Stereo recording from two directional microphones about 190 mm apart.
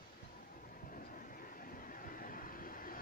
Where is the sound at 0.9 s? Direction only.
45° left (ahead or behind).